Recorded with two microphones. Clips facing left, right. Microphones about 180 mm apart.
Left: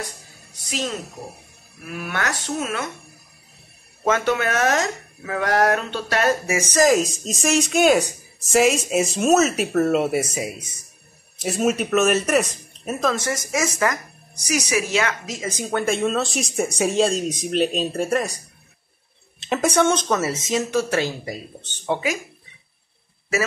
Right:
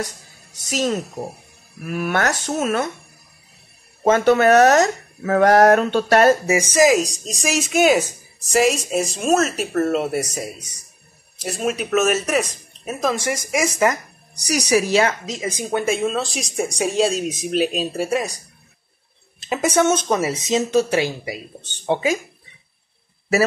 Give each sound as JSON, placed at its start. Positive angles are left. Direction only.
{"t": 0.7, "sound": "speech", "side_deg": -45}
{"t": 4.0, "sound": "speech", "side_deg": -35}
{"t": 6.4, "sound": "speech", "side_deg": -20}
{"t": 6.8, "sound": "speech", "side_deg": 0}
{"t": 13.0, "sound": "speech", "side_deg": -10}
{"t": 14.5, "sound": "speech", "side_deg": -35}
{"t": 15.2, "sound": "speech", "side_deg": -15}
{"t": 15.9, "sound": "speech", "side_deg": 0}
{"t": 19.4, "sound": "speech", "side_deg": 0}
{"t": 21.8, "sound": "speech", "side_deg": -25}